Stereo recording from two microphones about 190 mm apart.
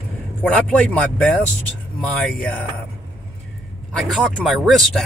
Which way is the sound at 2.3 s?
5° left (ahead or behind).